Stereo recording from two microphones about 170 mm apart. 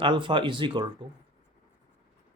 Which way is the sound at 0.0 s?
30° right (ahead or behind).